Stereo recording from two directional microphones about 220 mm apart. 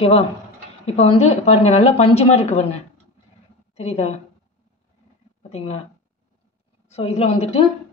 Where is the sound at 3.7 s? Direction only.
30° left (ahead or behind).